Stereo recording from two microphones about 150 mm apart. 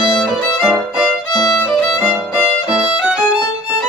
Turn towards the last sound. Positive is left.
turn(degrees=-5)  # may be behind; listen again after turning